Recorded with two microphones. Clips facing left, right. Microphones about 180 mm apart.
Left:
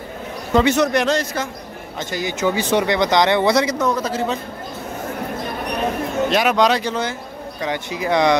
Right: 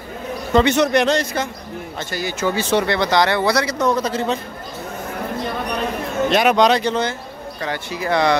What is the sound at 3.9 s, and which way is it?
Speech, 5° left (ahead or behind).